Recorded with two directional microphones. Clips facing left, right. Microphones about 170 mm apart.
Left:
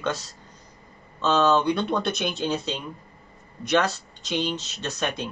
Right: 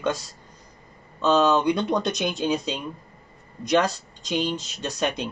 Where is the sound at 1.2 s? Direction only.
15° right (ahead or behind).